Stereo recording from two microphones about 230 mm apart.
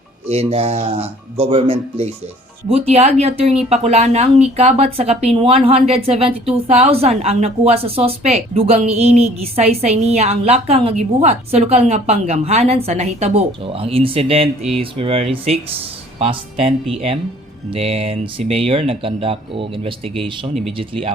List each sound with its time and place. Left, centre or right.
0.3 s a woman's voice: right